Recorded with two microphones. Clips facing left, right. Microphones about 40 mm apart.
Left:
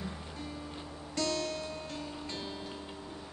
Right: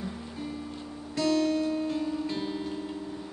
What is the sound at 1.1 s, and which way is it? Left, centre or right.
Music, centre.